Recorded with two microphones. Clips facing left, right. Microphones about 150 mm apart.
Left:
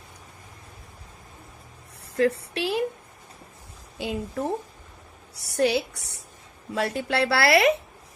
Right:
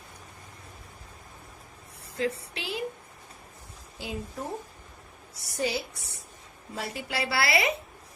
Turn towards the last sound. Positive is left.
turn(degrees=75)  # may be behind; listen again after turning